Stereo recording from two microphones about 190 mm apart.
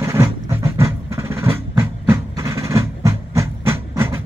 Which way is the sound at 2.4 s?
15° right (ahead or behind).